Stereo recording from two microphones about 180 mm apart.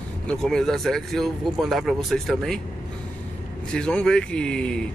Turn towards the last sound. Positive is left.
turn(degrees=5)  # may be behind; listen again after turning